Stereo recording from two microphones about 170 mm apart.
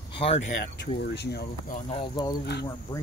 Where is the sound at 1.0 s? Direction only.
80° left.